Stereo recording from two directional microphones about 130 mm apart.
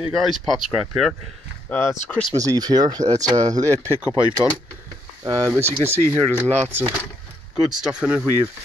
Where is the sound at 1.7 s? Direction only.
15° left (ahead or behind).